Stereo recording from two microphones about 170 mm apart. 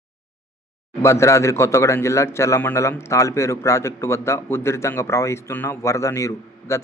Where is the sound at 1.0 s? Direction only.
15° left (ahead or behind).